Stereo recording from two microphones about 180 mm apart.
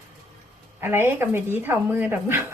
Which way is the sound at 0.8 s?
15° right (ahead or behind).